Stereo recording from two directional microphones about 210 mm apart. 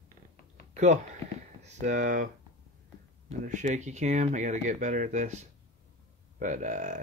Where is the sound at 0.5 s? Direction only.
35° right (ahead or behind).